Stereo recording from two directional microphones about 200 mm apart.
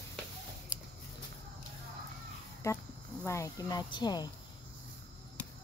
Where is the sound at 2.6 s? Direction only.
15° left (ahead or behind).